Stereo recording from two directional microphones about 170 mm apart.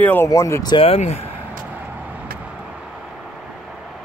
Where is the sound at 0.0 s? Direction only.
15° left (ahead or behind).